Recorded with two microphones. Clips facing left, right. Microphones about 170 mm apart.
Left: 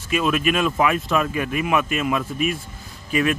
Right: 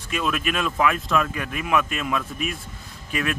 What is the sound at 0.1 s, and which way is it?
Speech, centre (ahead or behind).